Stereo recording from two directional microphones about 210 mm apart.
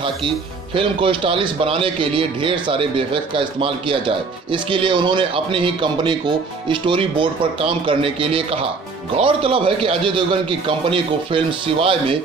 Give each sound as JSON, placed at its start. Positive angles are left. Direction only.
{"t": 0.7, "sound": "a man's voice", "side_deg": -25}